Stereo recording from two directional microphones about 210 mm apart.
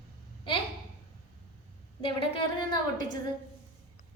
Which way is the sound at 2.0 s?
25° left (ahead or behind).